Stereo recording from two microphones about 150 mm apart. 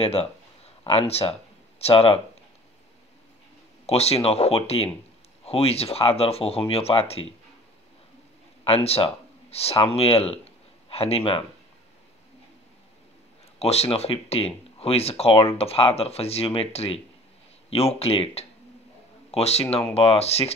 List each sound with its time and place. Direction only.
0.0 s speech: 40° left (ahead or behind)
3.8 s speech: 45° left (ahead or behind)
8.6 s speech: 40° left (ahead or behind)
13.6 s speech: 45° left (ahead or behind)